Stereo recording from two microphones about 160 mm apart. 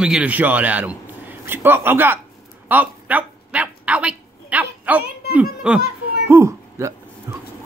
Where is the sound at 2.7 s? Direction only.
10° right (ahead or behind).